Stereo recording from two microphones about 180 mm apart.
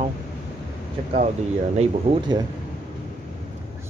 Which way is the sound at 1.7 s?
25° right (ahead or behind).